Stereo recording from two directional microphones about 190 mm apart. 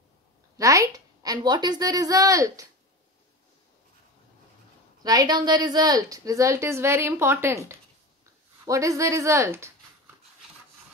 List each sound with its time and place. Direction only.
0.6 s a woman's voice: 15° right (ahead or behind)
5.0 s a woman's voice: 20° right (ahead or behind)